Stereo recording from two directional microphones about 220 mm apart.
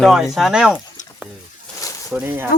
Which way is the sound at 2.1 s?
10° right (ahead or behind).